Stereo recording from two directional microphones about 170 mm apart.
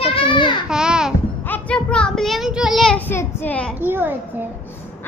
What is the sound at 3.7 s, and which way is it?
Speech, 10° right (ahead or behind).